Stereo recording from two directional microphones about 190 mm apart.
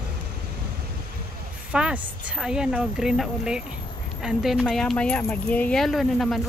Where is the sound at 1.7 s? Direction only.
5° right (ahead or behind).